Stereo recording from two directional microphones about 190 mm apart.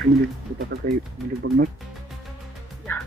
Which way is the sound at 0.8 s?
45° right (ahead or behind).